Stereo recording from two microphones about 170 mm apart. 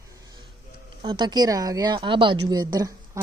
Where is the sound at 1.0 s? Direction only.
25° right (ahead or behind).